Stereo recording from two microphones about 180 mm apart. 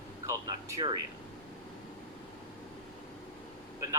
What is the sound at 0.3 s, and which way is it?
Air conditioning, 20° right (ahead or behind).